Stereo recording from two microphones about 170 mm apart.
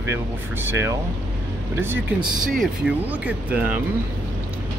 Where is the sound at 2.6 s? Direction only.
10° right (ahead or behind).